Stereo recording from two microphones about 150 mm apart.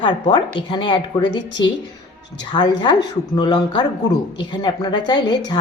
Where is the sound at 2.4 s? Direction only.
30° left (ahead or behind).